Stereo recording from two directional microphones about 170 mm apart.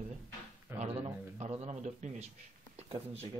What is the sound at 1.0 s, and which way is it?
Speech, 35° right (ahead or behind).